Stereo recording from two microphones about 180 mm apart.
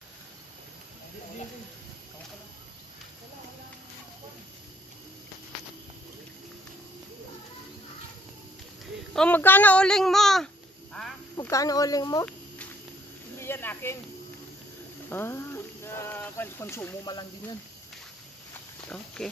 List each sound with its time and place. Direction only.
9.1 s speech: 5° left (ahead or behind)
11.3 s speech: 20° left (ahead or behind)
13.4 s a sound: 10° left (ahead or behind)
15.0 s a sound: 10° left (ahead or behind)
17.0 s speech: 20° left (ahead or behind)
18.5 s snake: 5° left (ahead or behind)